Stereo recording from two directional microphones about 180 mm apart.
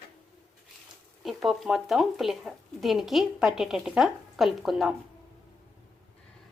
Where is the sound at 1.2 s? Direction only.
Centre (ahead or behind).